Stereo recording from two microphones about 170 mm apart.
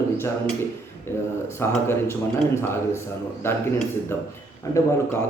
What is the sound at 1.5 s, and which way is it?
Speech, 15° left (ahead or behind).